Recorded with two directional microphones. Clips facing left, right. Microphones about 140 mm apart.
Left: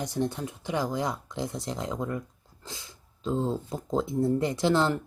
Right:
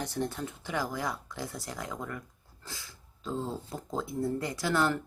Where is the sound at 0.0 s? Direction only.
20° left (ahead or behind).